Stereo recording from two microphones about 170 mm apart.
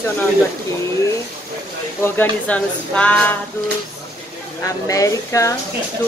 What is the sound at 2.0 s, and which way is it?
Speech, 10° left (ahead or behind).